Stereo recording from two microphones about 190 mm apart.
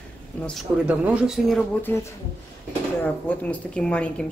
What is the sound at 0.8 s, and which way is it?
Speech, 5° right (ahead or behind).